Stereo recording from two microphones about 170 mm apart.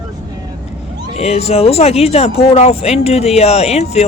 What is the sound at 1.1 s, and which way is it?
Speech, 40° left (ahead or behind).